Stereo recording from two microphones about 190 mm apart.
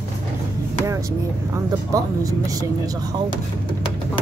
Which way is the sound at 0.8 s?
15° right (ahead or behind).